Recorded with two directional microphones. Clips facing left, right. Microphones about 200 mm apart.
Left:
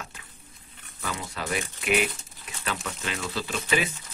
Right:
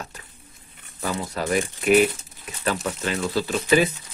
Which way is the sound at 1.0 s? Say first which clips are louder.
Right 7 dB; 40° right (ahead or behind).